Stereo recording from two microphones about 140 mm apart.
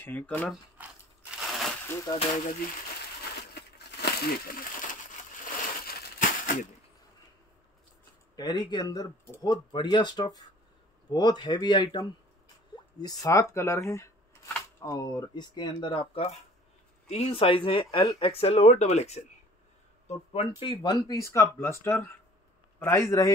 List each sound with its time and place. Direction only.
0.0 s speech: 15° left (ahead or behind)
1.4 s a sound: centre (ahead or behind)
2.1 s speech: 30° left (ahead or behind)
4.2 s speech: 90° left
5.4 s crushing: 85° left
8.4 s speech: 30° left (ahead or behind); by 20.7 s 50° left (ahead or behind)
20.7 s speech: 30° left (ahead or behind)